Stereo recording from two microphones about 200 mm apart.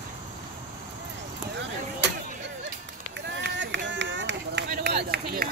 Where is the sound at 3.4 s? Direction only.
65° right (ahead or behind).